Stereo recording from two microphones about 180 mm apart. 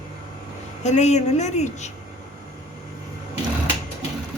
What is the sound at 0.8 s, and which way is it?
A woman's voice, 40° left (ahead or behind).